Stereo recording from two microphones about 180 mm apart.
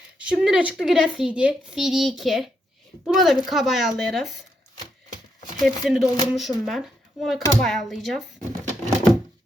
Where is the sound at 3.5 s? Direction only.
Centre (ahead or behind).